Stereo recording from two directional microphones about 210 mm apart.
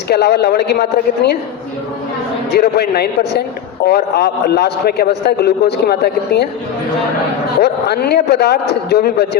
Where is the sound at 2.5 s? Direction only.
50° left (ahead or behind).